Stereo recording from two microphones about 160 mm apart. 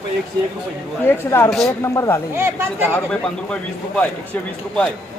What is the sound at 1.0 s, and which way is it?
Speech, 15° left (ahead or behind).